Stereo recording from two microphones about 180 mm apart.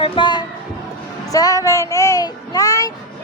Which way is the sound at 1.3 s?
20° left (ahead or behind).